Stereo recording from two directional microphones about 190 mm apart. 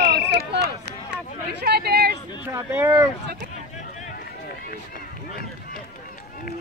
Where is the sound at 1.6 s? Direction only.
55° right (ahead or behind).